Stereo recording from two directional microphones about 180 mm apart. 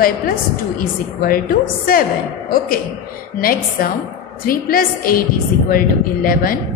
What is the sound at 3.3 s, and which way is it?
A woman's voice, 55° left (ahead or behind).